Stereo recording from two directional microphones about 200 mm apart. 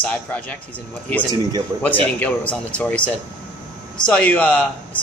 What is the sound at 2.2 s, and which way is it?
A man's voice, 5° left (ahead or behind).